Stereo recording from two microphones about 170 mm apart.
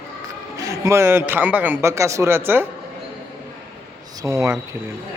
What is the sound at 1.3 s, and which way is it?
Speech, 10° right (ahead or behind).